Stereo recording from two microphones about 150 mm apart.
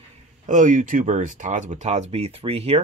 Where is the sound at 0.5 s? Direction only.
60° right (ahead or behind).